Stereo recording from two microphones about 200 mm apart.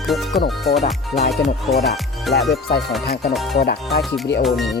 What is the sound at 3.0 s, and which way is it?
Speech, 50° left (ahead or behind).